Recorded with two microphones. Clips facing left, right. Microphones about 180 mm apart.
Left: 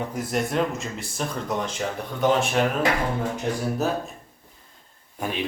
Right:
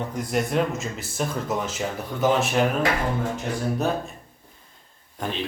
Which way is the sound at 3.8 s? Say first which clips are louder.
Even; centre (ahead or behind).